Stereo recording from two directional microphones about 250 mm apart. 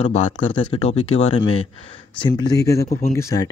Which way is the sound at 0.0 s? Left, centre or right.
Centre.